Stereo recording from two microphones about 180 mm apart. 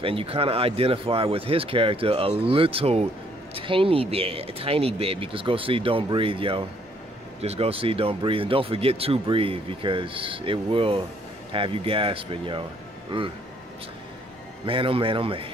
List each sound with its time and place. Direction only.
0.0 s speech: 30° right (ahead or behind)
14.7 s speech: 30° right (ahead or behind)